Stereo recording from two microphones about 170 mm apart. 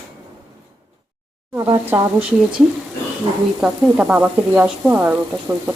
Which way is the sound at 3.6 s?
5° right (ahead or behind).